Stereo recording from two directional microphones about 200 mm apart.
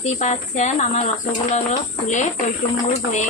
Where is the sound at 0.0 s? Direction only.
35° left (ahead or behind).